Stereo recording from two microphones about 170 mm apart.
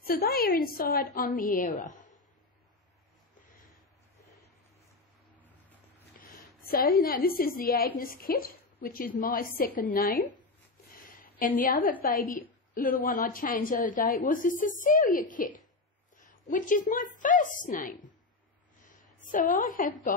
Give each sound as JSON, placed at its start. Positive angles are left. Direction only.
{"t": 0.0, "sound": "a woman's voice", "side_deg": 65}
{"t": 6.6, "sound": "a woman's voice", "side_deg": 60}
{"t": 11.1, "sound": "a sound", "side_deg": 55}
{"t": 12.0, "sound": "a woman's voice", "side_deg": 60}
{"t": 19.1, "sound": "a woman's voice", "side_deg": 50}